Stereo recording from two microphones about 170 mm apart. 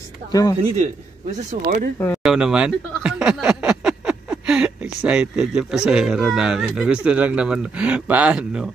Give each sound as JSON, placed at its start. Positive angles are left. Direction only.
{"t": 0.3, "sound": "speech", "side_deg": 20}
{"t": 1.5, "sound": "speech", "side_deg": -55}
{"t": 2.2, "sound": "speech", "side_deg": -5}